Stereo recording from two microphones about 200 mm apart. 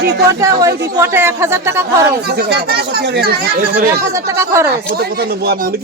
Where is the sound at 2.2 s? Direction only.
55° right (ahead or behind).